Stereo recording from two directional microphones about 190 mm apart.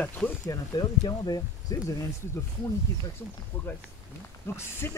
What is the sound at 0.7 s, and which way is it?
Speech, 20° left (ahead or behind).